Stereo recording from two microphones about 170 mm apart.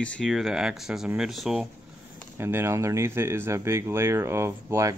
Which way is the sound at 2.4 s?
15° right (ahead or behind).